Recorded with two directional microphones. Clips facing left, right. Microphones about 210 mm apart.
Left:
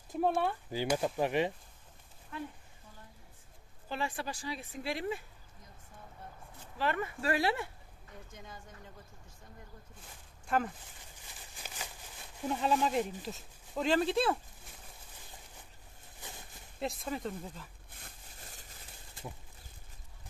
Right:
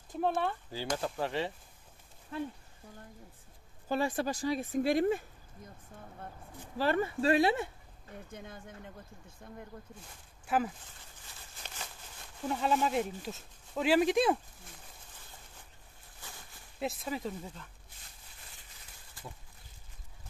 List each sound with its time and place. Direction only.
0.2 s speech: 10° left (ahead or behind)
2.3 s speech: 35° right (ahead or behind)
3.9 s speech: 40° right (ahead or behind)
6.8 s speech: 35° right (ahead or behind)
8.3 s speech: 60° right (ahead or behind)
10.4 s speech: 5° right (ahead or behind)
11.6 s a sound: 10° left (ahead or behind)
12.4 s speech: centre (ahead or behind)
13.9 s speech: 15° right (ahead or behind)
16.2 s a sound: 20° left (ahead or behind)
16.8 s speech: centre (ahead or behind)
17.9 s a sound: 50° left (ahead or behind)